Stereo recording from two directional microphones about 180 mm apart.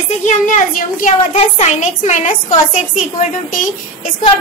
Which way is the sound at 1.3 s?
35° left (ahead or behind).